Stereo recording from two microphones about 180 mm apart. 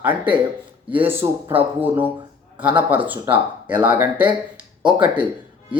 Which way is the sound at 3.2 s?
30° right (ahead or behind).